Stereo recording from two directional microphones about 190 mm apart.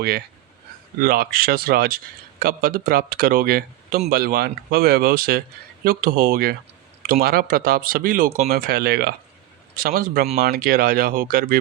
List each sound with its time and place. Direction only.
1.0 s speech: 50° right (ahead or behind)